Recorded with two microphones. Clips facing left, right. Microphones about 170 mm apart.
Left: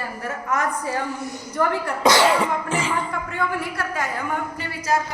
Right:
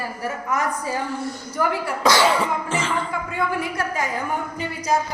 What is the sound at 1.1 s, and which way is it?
Speech, 15° left (ahead or behind).